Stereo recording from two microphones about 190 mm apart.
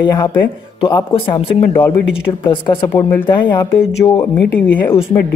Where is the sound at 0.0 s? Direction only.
20° left (ahead or behind).